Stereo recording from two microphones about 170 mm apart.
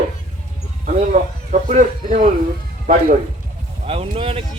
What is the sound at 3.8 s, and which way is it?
Speech, 35° right (ahead or behind).